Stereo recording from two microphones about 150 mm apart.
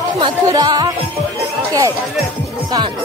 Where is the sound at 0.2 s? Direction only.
25° right (ahead or behind).